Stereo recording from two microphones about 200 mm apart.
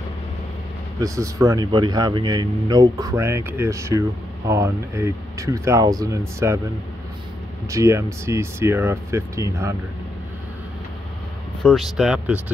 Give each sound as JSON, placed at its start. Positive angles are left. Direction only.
{"t": 1.0, "sound": "speech", "side_deg": -15}
{"t": 7.7, "sound": "speech", "side_deg": -15}
{"t": 11.6, "sound": "speech", "side_deg": 0}